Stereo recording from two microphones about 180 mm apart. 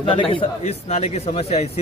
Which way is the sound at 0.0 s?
30° left (ahead or behind).